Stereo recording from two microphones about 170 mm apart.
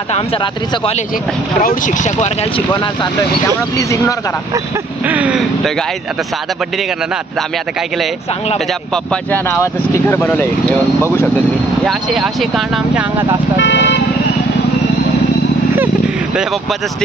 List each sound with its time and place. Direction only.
0.1 s speech: 35° left (ahead or behind)
1.6 s speech: 55° left (ahead or behind)
2.7 s speech: 25° left (ahead or behind)
5.0 s speech: 10° right (ahead or behind)
8.9 s speech: 5° left (ahead or behind)
9.5 s speech: 15° left (ahead or behind)
11.8 s speech: centre (ahead or behind)
13.6 s speech: 90° left